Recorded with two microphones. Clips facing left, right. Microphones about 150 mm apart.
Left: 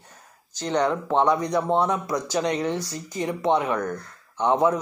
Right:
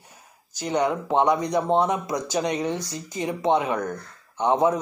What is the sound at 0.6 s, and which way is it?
Speech, 10° right (ahead or behind).